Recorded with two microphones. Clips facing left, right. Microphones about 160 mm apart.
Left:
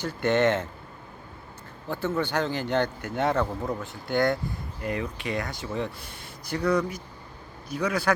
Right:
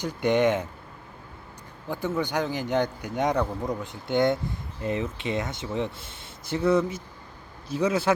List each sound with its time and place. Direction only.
0.0 s speech: 15° right (ahead or behind)
1.9 s speech: 10° right (ahead or behind)